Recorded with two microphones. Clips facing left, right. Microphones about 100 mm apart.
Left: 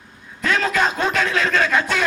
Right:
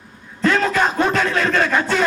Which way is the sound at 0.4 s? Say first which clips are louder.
Right 2 dB; 30° right (ahead or behind).